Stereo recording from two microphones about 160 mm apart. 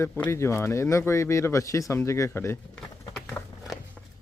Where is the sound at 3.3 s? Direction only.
10° left (ahead or behind).